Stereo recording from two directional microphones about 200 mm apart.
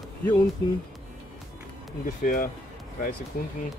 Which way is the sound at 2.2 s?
45° left (ahead or behind).